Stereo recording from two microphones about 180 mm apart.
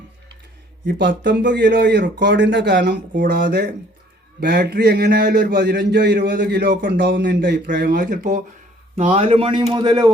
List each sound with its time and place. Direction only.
0.9 s a man's voice: 75° right (ahead or behind)
3.2 s a man's voice: 50° right (ahead or behind)
9.0 s a man's voice: 35° right (ahead or behind)